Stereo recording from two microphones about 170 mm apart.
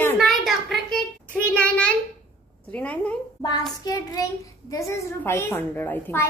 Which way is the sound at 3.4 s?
25° left (ahead or behind).